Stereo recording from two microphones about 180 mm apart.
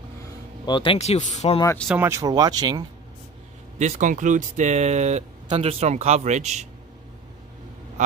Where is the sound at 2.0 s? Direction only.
15° right (ahead or behind).